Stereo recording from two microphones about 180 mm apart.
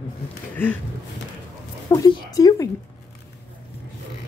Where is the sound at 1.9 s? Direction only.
20° left (ahead or behind).